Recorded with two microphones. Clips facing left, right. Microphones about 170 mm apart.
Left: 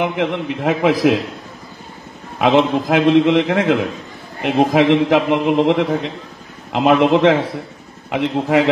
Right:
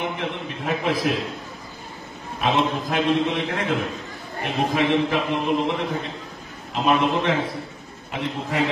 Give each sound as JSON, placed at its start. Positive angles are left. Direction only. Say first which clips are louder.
{"t": 0.0, "sound": "a man's voice", "louder": "left 9 dB", "side_deg": 90}
{"t": 2.3, "sound": "a man's voice", "louder": "left 8 dB", "side_deg": 90}